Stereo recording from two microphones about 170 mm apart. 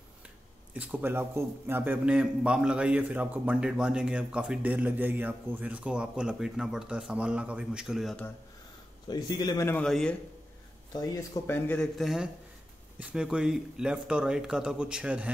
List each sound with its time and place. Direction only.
0.7 s a man's voice: 10° right (ahead or behind)
9.0 s a man's voice: 25° left (ahead or behind)
9.8 s speech: centre (ahead or behind)
10.9 s a man's voice: 20° left (ahead or behind)
12.0 s speech: centre (ahead or behind)